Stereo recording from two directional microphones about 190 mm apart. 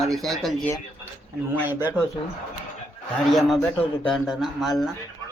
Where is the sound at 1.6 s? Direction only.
10° right (ahead or behind).